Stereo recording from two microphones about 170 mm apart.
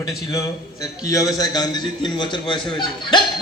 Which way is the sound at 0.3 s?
20° left (ahead or behind).